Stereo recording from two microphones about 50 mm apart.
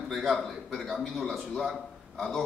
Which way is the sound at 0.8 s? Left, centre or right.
Centre.